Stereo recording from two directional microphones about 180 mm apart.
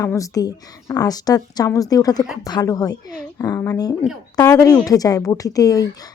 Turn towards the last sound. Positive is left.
turn(degrees=20)  # may be behind; listen again after turning